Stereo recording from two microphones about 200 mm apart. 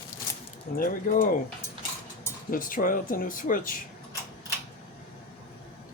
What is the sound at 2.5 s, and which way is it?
Speech, 45° left (ahead or behind).